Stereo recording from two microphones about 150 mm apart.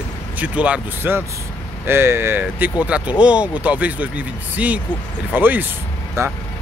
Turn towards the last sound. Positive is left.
turn(degrees=-20)  # may be behind; listen again after turning